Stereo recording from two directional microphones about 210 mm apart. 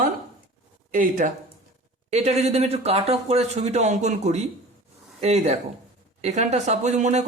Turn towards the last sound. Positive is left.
turn(degrees=-30)  # may be behind; listen again after turning